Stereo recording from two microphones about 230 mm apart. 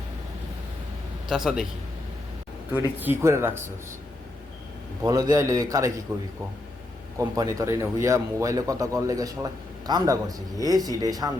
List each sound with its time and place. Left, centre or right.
1.3 s a man's voice: centre
2.7 s speech: centre
5.0 s speech: centre